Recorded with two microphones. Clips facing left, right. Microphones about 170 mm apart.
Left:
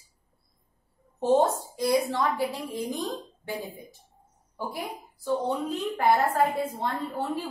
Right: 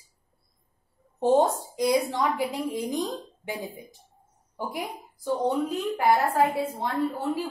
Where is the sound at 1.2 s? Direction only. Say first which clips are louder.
Right 1 dB; 15° right (ahead or behind).